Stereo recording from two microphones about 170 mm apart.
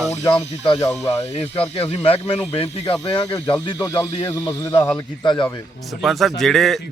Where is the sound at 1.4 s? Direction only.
35° left (ahead or behind).